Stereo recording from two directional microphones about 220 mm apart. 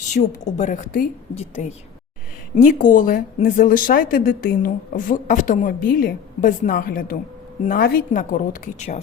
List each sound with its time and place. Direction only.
0.2 s a woman's voice: 35° left (ahead or behind)